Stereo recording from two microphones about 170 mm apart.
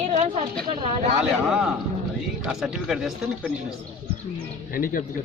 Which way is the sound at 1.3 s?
Centre (ahead or behind).